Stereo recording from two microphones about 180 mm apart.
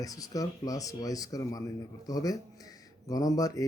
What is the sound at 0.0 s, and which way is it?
Speech, 20° left (ahead or behind).